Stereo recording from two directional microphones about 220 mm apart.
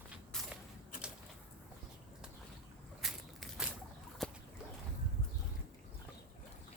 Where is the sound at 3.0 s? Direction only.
Centre (ahead or behind).